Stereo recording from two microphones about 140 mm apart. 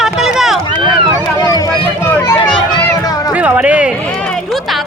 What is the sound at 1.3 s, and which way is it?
Run, 25° left (ahead or behind).